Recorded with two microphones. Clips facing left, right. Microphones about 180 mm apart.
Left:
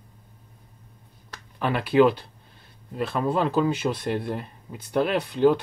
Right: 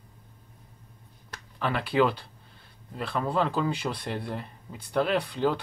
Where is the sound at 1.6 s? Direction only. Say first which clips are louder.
Left 6 dB; 15° left (ahead or behind).